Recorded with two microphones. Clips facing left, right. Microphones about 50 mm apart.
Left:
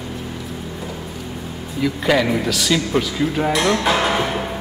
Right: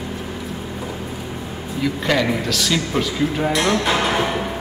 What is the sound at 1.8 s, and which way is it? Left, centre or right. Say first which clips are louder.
Speech: left 2 dB; centre.